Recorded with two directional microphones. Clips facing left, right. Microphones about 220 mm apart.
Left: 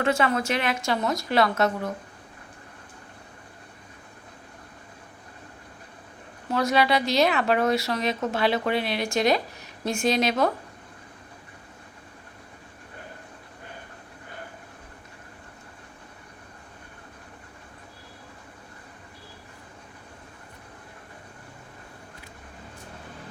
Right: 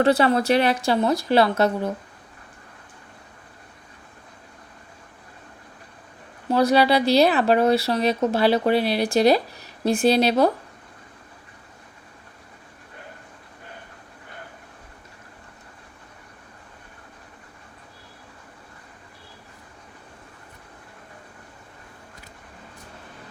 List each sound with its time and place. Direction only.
0.0 s speech: 35° right (ahead or behind)
6.5 s speech: 35° right (ahead or behind)